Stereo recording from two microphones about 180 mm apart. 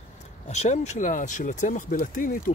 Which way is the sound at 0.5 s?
40° left (ahead or behind).